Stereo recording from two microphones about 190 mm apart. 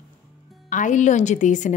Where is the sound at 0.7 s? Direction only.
40° left (ahead or behind).